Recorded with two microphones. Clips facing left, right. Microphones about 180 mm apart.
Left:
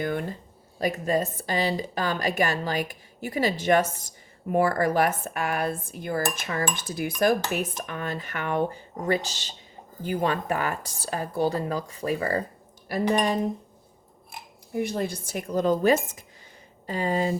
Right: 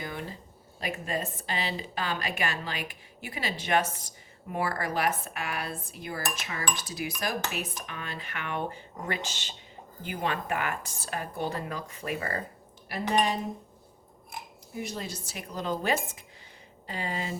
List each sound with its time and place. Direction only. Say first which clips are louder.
0.0 s cutlery: left 9 dB; 55° left (ahead or behind)
0.8 s speech: left 8 dB; 40° left (ahead or behind)
4.5 s cutlery: left 8 dB; 45° left (ahead or behind)
7.8 s speech: left 7 dB; 45° left (ahead or behind)
12.9 s cutlery: left 4 dB; 50° left (ahead or behind)
14.7 s cutlery: left 9 dB; 60° left (ahead or behind)